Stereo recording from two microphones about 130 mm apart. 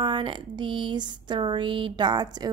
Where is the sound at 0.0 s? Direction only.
40° right (ahead or behind).